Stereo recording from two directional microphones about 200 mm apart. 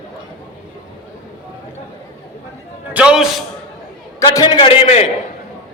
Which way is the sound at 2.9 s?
5° right (ahead or behind).